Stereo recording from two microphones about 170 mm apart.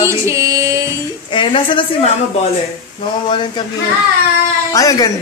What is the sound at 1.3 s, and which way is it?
Speech, 30° left (ahead or behind).